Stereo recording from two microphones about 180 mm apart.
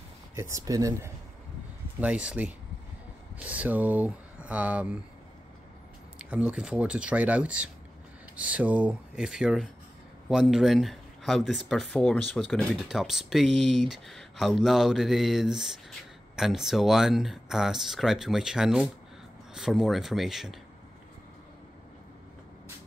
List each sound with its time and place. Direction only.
0.4 s speech: 15° right (ahead or behind)
6.1 s speech: 5° right (ahead or behind)